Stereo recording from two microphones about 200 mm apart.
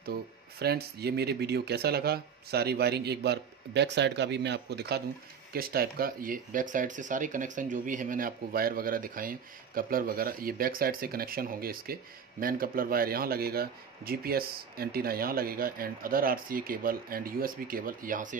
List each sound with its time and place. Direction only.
0.0 s speech: 50° right (ahead or behind)